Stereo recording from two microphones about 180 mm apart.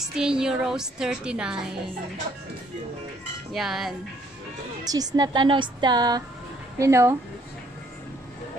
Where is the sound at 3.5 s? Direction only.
Centre (ahead or behind).